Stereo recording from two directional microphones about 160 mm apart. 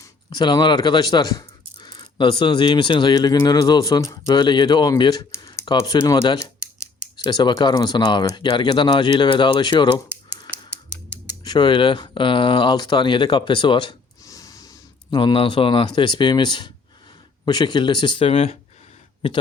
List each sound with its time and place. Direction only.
0.0 s speech: 25° left (ahead or behind)
10.5 s typewriter: 15° right (ahead or behind)
11.4 s speech: 30° left (ahead or behind)